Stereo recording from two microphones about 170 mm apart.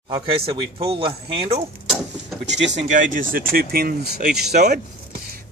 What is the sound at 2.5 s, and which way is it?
Speech, 90° right.